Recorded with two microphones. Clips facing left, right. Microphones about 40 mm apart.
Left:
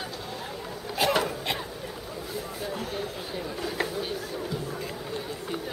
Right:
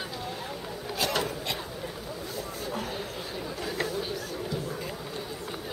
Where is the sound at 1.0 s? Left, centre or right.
Centre.